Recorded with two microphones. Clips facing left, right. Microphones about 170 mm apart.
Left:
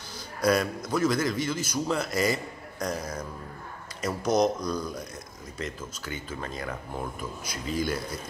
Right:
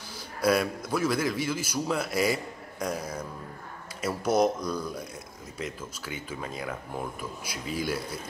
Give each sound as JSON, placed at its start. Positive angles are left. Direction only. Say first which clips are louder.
{"t": 0.4, "sound": "a man's voice", "louder": "even", "side_deg": -5}